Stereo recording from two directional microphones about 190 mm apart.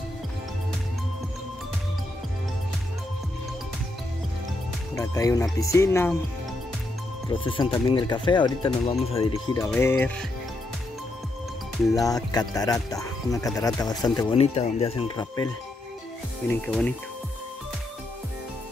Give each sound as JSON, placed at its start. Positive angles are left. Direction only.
{"t": 4.9, "sound": "speech", "side_deg": 15}
{"t": 7.2, "sound": "speech", "side_deg": 25}
{"t": 9.8, "sound": "speech", "side_deg": 10}
{"t": 11.9, "sound": "speech", "side_deg": 20}
{"t": 14.4, "sound": "speech", "side_deg": 30}
{"t": 16.4, "sound": "speech", "side_deg": 5}